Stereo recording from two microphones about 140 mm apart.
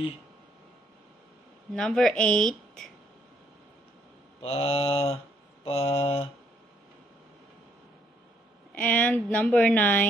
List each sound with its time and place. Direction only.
1.7 s speech: 5° left (ahead or behind)
4.4 s mantra: 45° left (ahead or behind)
8.7 s speech: 10° left (ahead or behind)